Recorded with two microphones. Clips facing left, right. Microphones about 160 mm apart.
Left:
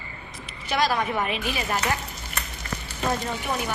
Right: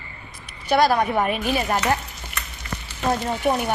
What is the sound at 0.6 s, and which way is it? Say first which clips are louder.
A woman's voice: right 6 dB; 40° right (ahead or behind).